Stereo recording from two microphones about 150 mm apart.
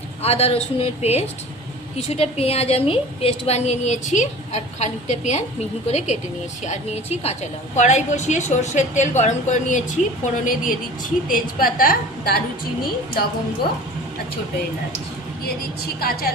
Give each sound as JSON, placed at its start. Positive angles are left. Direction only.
{"t": 0.2, "sound": "a woman's voice", "side_deg": 45}
{"t": 16.0, "sound": "a woman's voice", "side_deg": 90}